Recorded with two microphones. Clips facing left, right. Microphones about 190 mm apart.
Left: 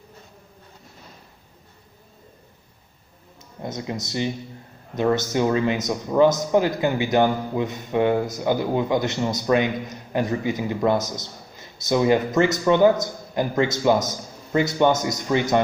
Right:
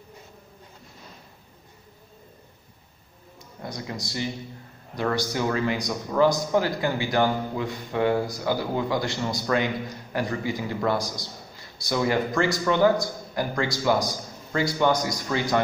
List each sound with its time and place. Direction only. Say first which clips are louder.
3.3 s a man's voice: left 4 dB; 20° left (ahead or behind)